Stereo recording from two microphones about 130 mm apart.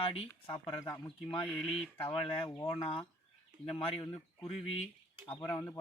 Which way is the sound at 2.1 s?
45° left (ahead or behind).